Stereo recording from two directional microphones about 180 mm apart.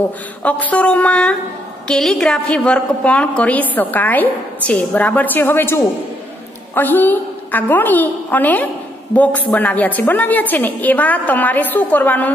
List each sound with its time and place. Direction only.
0.4 s a woman's voice: 10° left (ahead or behind)